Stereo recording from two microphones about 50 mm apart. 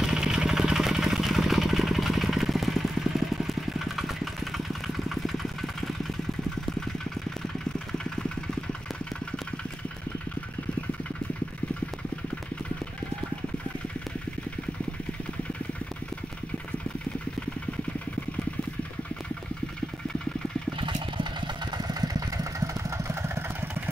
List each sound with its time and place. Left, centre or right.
0.0 s vehicle: centre
22.6 s vehicle: right